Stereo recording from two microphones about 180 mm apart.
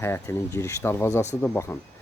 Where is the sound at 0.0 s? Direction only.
15° left (ahead or behind).